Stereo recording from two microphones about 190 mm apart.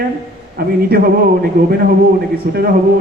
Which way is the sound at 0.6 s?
50° right (ahead or behind).